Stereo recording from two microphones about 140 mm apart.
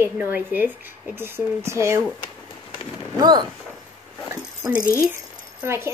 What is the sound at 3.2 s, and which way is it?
Speech, 30° right (ahead or behind).